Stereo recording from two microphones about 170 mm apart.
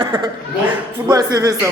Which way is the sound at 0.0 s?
25° right (ahead or behind).